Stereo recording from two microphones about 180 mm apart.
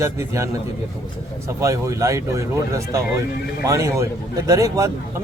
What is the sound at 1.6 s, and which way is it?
Speech, 15° right (ahead or behind).